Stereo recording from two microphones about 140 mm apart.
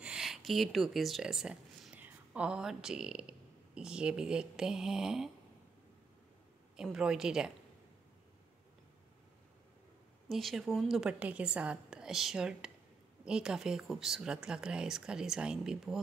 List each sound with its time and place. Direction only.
0.0 s speech: 5° right (ahead or behind)
6.8 s a woman's voice: 5° right (ahead or behind)
10.2 s a woman's voice: centre (ahead or behind)